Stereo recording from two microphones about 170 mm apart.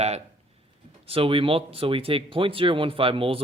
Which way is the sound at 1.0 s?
35° right (ahead or behind).